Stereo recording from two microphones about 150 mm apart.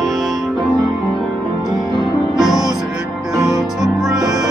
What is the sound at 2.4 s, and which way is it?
Music, 5° right (ahead or behind).